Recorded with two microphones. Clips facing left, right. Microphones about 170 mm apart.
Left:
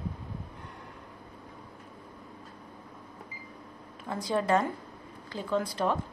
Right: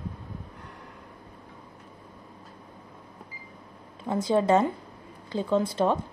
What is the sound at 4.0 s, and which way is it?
A woman's voice, 25° right (ahead or behind).